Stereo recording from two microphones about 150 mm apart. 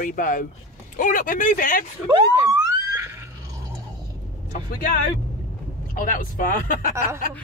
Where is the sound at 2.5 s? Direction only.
20° right (ahead or behind).